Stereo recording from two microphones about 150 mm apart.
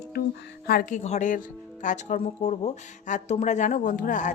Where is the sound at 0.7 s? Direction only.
70° left (ahead or behind).